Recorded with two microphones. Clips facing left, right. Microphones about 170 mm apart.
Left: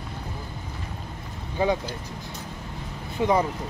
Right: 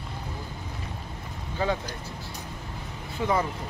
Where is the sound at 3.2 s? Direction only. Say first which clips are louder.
Left 4 dB; 20° left (ahead or behind).